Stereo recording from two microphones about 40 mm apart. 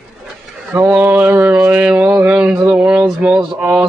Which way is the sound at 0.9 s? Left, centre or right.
Right.